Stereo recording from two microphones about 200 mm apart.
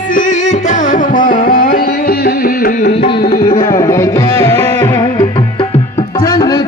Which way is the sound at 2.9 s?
25° left (ahead or behind).